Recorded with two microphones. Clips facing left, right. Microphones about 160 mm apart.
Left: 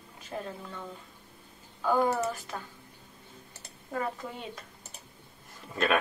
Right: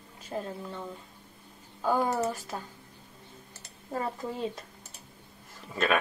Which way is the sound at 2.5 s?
25° right (ahead or behind).